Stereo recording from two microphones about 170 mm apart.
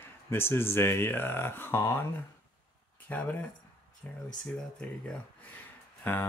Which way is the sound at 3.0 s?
10° left (ahead or behind).